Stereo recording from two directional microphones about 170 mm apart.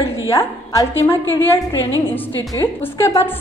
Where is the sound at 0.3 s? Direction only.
15° left (ahead or behind).